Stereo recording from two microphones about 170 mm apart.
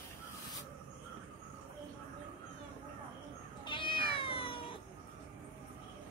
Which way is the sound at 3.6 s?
30° left (ahead or behind).